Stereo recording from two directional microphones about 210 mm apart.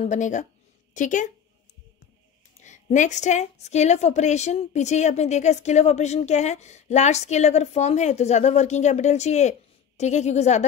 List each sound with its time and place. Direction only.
0.0 s a woman's voice: 35° left (ahead or behind)
2.6 s a woman's voice: 35° left (ahead or behind)